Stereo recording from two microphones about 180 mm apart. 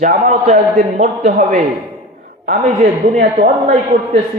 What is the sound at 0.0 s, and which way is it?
A man's voice, 45° right (ahead or behind).